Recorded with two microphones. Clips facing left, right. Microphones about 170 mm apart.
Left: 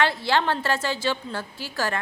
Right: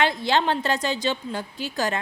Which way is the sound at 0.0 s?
15° right (ahead or behind).